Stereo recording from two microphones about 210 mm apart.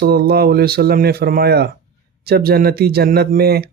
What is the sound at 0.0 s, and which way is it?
Speech, 50° right (ahead or behind).